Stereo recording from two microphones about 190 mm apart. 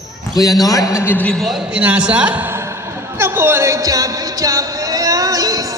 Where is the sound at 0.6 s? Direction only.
20° left (ahead or behind).